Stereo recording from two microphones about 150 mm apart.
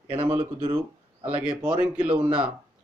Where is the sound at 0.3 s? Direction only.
40° right (ahead or behind).